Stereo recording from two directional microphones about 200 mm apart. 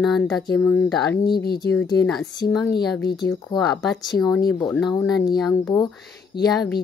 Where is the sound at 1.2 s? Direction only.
50° left (ahead or behind).